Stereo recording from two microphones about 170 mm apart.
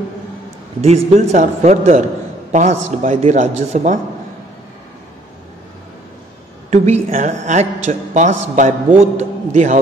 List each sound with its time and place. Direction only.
0.7 s a man's voice: 40° right (ahead or behind)
6.7 s a woman's voice: 40° right (ahead or behind)